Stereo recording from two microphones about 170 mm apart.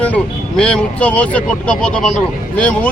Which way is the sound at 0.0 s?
5° left (ahead or behind).